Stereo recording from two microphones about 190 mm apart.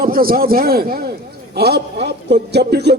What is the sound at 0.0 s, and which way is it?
A man's voice, 50° right (ahead or behind).